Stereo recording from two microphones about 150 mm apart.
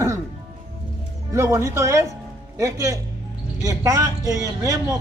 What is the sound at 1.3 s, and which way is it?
Speech, 20° right (ahead or behind).